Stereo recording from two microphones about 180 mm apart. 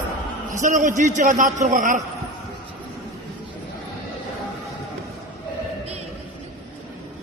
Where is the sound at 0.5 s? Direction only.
45° right (ahead or behind).